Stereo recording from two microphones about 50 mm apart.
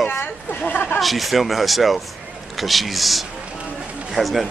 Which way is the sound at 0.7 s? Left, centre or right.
Left.